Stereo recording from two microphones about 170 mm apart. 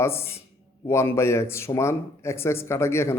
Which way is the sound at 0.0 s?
15° left (ahead or behind).